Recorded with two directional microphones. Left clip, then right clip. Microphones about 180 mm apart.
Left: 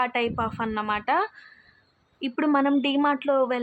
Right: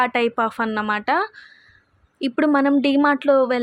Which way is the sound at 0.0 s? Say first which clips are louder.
Right 6 dB; 35° right (ahead or behind).